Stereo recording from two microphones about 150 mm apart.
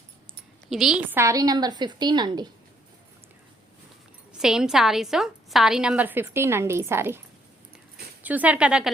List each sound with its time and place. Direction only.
0.7 s a woman's voice: centre (ahead or behind)
1.1 s a woman's voice: 20° right (ahead or behind)
4.3 s a woman's voice: 5° right (ahead or behind)
8.2 s speech: 10° right (ahead or behind)